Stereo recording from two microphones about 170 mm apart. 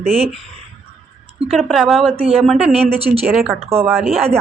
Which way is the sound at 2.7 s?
35° right (ahead or behind).